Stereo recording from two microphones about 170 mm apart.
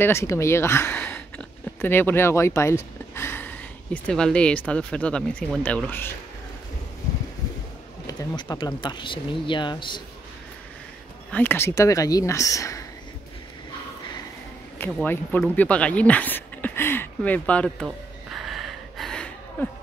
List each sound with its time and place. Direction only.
0.0 s speech: 15° left (ahead or behind)
8.1 s speech: 25° left (ahead or behind)
11.3 s speech: 15° left (ahead or behind)
14.8 s speech: 15° left (ahead or behind)
17.8 s gasp: centre (ahead or behind)